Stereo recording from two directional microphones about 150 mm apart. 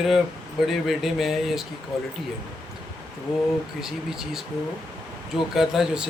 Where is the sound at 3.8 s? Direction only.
5° right (ahead or behind).